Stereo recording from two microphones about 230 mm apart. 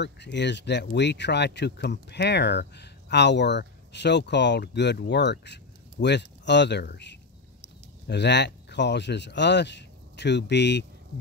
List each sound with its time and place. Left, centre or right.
0.0 s speech: left